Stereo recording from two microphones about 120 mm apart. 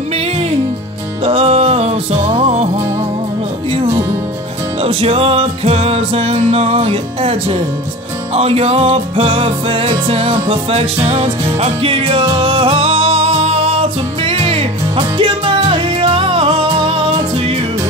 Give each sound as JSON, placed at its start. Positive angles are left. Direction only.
{"t": 1.2, "sound": "music", "side_deg": -55}
{"t": 4.8, "sound": "music", "side_deg": -55}